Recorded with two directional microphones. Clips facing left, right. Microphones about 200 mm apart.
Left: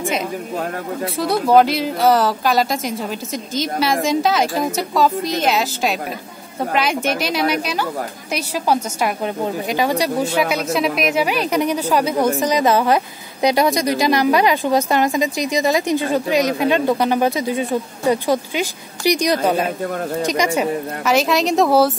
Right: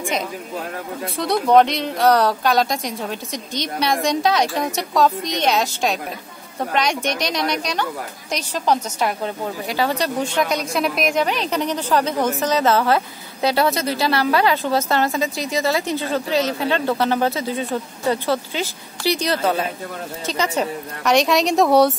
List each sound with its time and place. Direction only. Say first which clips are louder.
1.0 s a woman's voice: left 1 dB; centre (ahead or behind)